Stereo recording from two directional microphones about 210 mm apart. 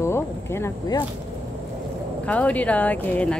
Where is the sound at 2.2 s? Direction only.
5° left (ahead or behind).